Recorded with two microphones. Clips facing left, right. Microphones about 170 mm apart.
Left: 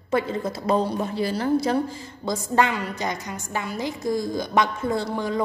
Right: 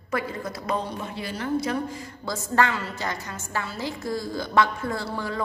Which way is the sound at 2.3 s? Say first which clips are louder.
Left 2 dB; 15° left (ahead or behind).